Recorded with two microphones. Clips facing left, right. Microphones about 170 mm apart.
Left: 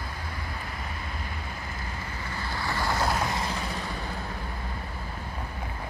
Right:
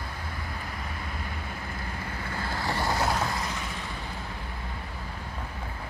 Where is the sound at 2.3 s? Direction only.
50° right (ahead or behind).